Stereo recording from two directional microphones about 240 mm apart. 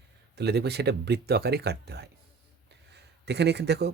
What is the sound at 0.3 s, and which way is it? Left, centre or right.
Speech, right.